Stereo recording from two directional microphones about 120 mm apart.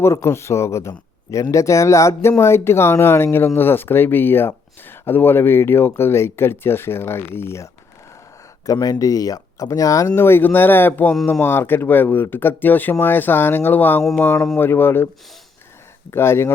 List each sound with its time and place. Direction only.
0.0 s speech: 25° left (ahead or behind)
16.1 s speech: 20° left (ahead or behind)